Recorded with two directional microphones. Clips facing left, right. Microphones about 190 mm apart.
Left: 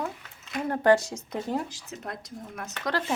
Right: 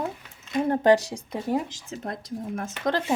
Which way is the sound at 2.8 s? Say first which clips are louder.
Right 4 dB; 20° right (ahead or behind).